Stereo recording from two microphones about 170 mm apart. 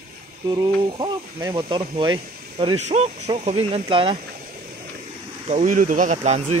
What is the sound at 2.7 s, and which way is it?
Speech, 40° right (ahead or behind).